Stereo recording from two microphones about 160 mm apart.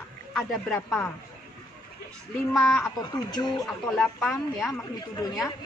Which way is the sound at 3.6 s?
5° left (ahead or behind).